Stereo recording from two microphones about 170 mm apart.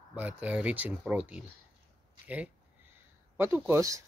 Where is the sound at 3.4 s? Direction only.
15° right (ahead or behind).